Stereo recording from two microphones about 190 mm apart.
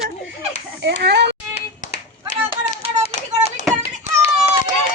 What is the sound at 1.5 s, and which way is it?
Clapping, 40° left (ahead or behind).